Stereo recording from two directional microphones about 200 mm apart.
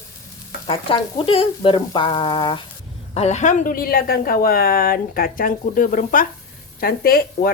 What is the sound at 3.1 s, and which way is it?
A woman's voice, 35° left (ahead or behind).